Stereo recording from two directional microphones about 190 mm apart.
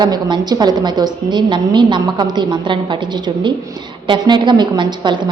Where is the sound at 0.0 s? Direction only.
20° right (ahead or behind).